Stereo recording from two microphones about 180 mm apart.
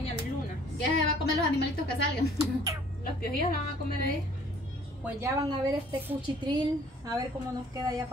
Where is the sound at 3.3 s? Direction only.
55° left (ahead or behind).